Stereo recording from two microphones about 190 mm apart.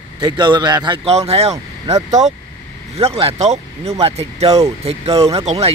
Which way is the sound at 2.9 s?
30° right (ahead or behind).